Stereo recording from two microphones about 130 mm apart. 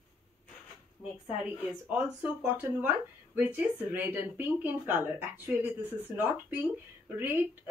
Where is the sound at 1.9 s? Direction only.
10° right (ahead or behind).